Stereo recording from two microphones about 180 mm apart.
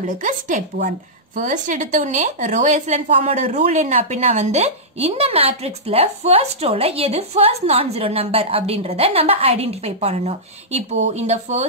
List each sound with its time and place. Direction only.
0.2 s speech: 45° right (ahead or behind)